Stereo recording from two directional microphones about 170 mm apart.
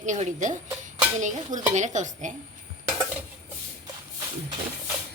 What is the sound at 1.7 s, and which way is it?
Speech, 45° right (ahead or behind).